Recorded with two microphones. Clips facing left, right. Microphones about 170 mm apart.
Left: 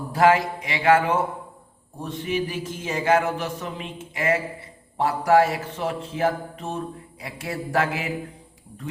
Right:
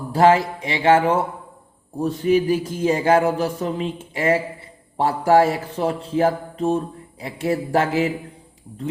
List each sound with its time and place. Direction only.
0.1 s speech: 30° right (ahead or behind)
2.0 s a sound: 40° right (ahead or behind)
4.9 s speech: 30° right (ahead or behind)